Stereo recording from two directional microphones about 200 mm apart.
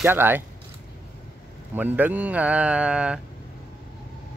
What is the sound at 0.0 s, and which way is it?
Speech, 10° right (ahead or behind).